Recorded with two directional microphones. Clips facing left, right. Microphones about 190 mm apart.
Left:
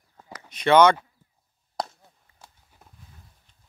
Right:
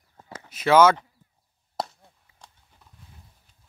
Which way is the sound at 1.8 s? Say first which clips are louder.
Even; 5° left (ahead or behind).